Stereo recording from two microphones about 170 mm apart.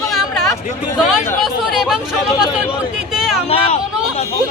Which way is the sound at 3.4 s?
35° left (ahead or behind).